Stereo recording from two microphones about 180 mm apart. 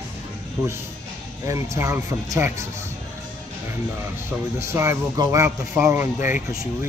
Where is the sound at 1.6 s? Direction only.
15° right (ahead or behind).